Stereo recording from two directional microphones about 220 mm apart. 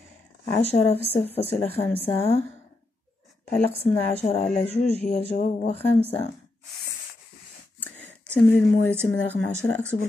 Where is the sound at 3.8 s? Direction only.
25° left (ahead or behind).